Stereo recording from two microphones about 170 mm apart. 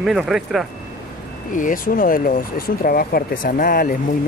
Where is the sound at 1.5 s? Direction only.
50° left (ahead or behind).